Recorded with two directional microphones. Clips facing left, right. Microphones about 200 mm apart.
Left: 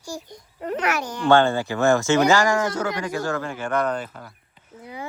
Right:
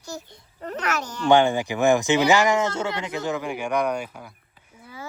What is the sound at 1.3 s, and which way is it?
Speech, 15° right (ahead or behind).